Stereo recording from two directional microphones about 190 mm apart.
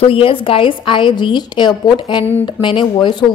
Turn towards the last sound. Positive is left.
turn(degrees=25)  # may be behind; listen again after turning